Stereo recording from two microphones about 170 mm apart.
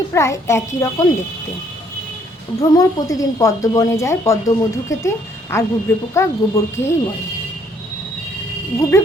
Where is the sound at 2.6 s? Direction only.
20° left (ahead or behind).